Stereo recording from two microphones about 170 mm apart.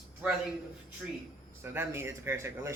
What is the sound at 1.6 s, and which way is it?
Speech, 15° right (ahead or behind).